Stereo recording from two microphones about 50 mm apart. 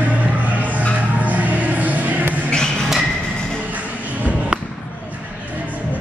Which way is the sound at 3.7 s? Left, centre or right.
Right.